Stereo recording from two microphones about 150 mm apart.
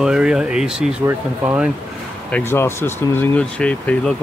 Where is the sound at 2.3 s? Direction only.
15° left (ahead or behind).